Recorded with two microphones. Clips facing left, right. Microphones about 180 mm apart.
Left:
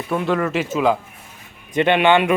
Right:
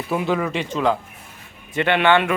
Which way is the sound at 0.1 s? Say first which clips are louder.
Left 2 dB; centre (ahead or behind).